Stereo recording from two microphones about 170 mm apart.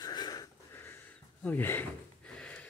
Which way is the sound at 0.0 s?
25° left (ahead or behind).